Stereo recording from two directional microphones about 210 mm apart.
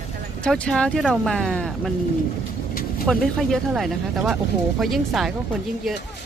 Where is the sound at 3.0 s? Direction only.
Centre (ahead or behind).